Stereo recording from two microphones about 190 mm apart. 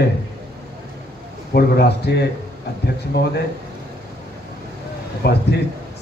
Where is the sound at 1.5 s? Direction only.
60° left (ahead or behind).